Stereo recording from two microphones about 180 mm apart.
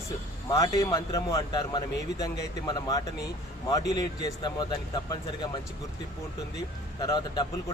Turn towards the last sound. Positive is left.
turn(degrees=25)  # may be behind; listen again after turning